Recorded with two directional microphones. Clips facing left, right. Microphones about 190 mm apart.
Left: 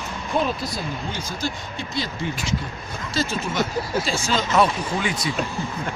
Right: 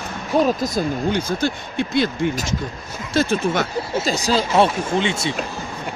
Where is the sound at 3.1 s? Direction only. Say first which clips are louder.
Right 6 dB; 55° right (ahead or behind).